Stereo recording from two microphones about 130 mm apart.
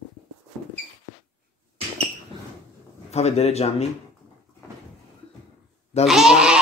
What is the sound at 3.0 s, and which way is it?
Speech, 55° left (ahead or behind).